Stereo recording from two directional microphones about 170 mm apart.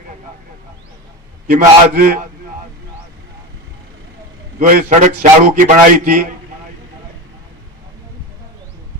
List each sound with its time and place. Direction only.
1.5 s a man's voice: 55° right (ahead or behind)
4.6 s a man's voice: 50° right (ahead or behind)